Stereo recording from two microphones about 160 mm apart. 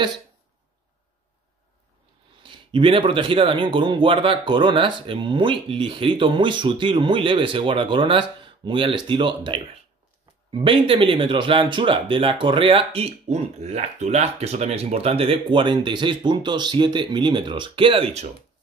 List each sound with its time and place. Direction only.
2.4 s speech: 30° right (ahead or behind)